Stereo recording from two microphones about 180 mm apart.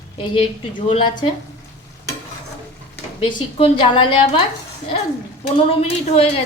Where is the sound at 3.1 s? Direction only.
30° left (ahead or behind).